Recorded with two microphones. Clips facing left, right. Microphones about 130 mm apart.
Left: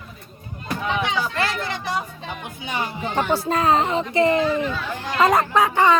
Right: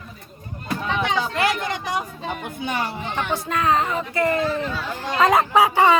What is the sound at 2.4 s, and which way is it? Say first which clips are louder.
Speech: right 2 dB; 50° right (ahead or behind).